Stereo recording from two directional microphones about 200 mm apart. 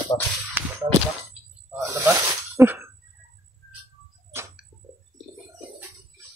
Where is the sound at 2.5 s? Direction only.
10° right (ahead or behind).